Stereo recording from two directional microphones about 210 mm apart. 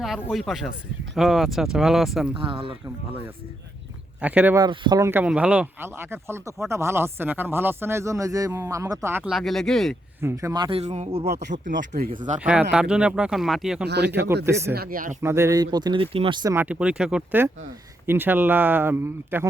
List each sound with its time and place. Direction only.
0.0 s speech: centre (ahead or behind)
2.3 s speech: 25° right (ahead or behind)
4.2 s speech: 5° right (ahead or behind)
4.6 s speech: 20° right (ahead or behind); by 10.0 s centre (ahead or behind)
10.2 s speech: 15° right (ahead or behind); by 11.3 s 30° right (ahead or behind)
11.7 s speech: 60° right (ahead or behind)
12.0 s speech: 30° right (ahead or behind)
12.4 s speech: 5° right (ahead or behind)
13.8 s speech: 50° right (ahead or behind)
14.1 s speech: 10° right (ahead or behind)
14.7 s speech: 45° right (ahead or behind)
15.2 s speech: 15° right (ahead or behind)